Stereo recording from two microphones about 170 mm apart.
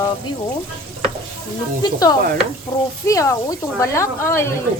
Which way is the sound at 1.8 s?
20° left (ahead or behind).